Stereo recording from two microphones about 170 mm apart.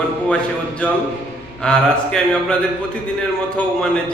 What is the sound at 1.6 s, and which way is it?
Speech, 5° left (ahead or behind).